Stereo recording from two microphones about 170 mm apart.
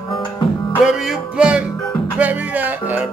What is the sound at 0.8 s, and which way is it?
Music, 5° right (ahead or behind).